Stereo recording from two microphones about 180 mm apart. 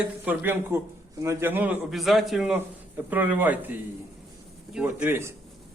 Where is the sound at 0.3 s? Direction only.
10° right (ahead or behind).